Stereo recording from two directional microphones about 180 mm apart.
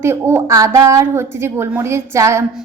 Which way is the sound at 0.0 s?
15° right (ahead or behind).